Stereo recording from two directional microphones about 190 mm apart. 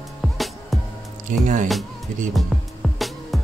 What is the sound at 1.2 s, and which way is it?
Speech, 40° right (ahead or behind).